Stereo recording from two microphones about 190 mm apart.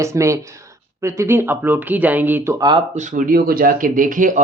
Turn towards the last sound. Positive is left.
turn(degrees=-45)  # may be behind; listen again after turning